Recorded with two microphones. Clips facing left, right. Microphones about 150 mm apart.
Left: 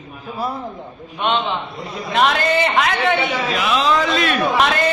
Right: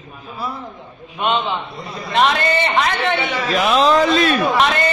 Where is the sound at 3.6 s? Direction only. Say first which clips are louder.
Right 5 dB; 40° right (ahead or behind).